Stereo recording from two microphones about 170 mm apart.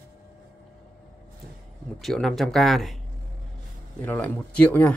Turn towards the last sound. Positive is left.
turn(degrees=10)  # may be behind; listen again after turning